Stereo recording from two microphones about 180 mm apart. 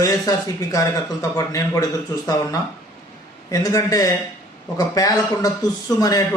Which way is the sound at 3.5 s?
20° left (ahead or behind).